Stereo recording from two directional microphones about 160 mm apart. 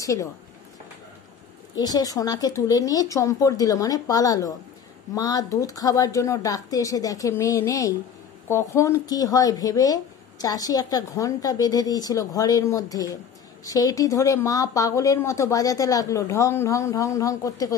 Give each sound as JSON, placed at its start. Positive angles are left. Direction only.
{"t": 0.0, "sound": "speech", "side_deg": 20}
{"t": 1.8, "sound": "speech", "side_deg": 25}